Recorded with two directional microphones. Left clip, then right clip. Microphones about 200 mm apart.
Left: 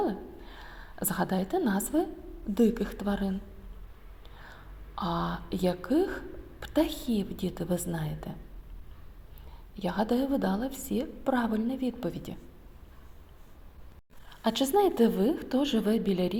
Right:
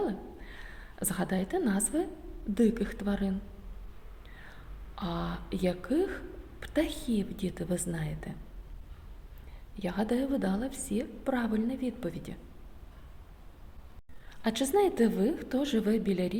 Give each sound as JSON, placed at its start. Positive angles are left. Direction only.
{"t": 0.0, "sound": "a sound", "side_deg": 5}
{"t": 0.9, "sound": "a woman's voice", "side_deg": 5}
{"t": 5.1, "sound": "speech", "side_deg": -15}
{"t": 5.5, "sound": "a woman's voice", "side_deg": 5}
{"t": 9.7, "sound": "a woman's voice", "side_deg": 5}
{"t": 14.3, "sound": "a woman's voice", "side_deg": 5}